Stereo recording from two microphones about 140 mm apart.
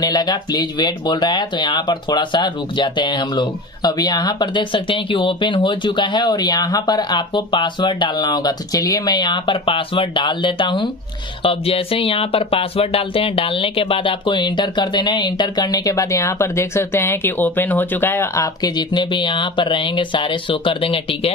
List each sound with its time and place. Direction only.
0.0 s speech: 25° left (ahead or behind)